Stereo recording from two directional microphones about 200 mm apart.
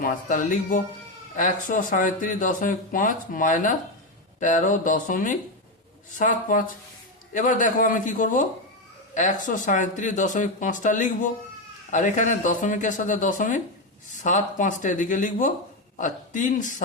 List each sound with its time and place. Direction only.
0.0 s speech: 40° left (ahead or behind)